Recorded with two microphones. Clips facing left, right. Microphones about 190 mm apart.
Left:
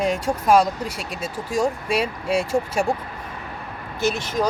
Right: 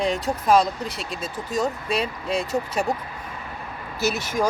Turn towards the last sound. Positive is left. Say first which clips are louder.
# left 2 dB
turn(degrees=-10)  # may be behind; listen again after turning